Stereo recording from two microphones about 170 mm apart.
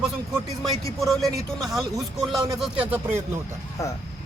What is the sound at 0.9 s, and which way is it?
Speech, centre (ahead or behind).